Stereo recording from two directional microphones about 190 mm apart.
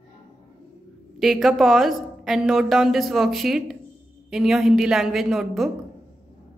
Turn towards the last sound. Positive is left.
turn(degrees=0)  # may be behind; listen again after turning